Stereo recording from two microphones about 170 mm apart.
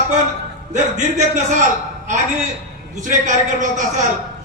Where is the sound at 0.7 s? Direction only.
45° right (ahead or behind).